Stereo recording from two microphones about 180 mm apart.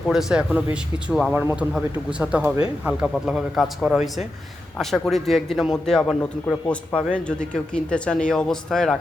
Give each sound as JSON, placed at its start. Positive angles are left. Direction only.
{"t": 0.1, "sound": "a man's voice", "side_deg": -5}